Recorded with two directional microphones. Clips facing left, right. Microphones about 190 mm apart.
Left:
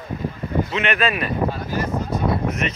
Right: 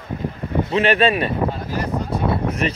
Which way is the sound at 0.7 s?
30° right (ahead or behind).